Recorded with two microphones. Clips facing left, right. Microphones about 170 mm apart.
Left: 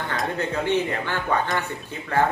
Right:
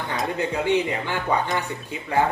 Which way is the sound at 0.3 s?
15° right (ahead or behind).